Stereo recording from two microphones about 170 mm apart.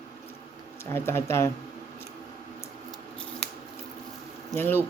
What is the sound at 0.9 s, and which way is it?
Speech, 15° left (ahead or behind).